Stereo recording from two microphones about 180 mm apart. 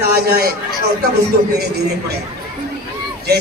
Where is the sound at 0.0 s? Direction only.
60° right (ahead or behind).